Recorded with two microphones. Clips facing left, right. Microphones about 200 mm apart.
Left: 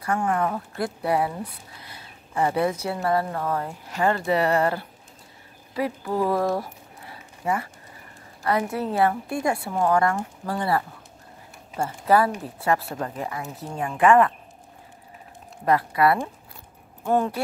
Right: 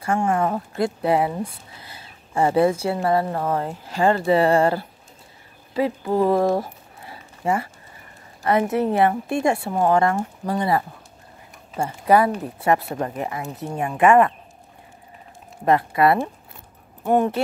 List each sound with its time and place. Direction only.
0.0 s speech: 25° right (ahead or behind)
15.6 s speech: 25° right (ahead or behind)